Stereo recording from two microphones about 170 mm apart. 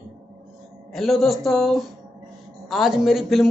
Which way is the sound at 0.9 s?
Centre (ahead or behind).